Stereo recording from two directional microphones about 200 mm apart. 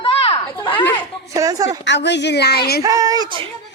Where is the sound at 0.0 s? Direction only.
30° left (ahead or behind).